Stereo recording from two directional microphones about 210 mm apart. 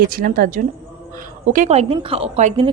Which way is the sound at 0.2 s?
40° right (ahead or behind).